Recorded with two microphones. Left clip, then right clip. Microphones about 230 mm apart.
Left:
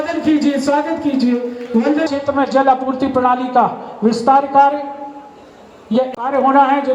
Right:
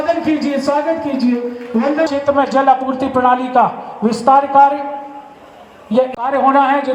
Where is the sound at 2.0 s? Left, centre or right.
Right.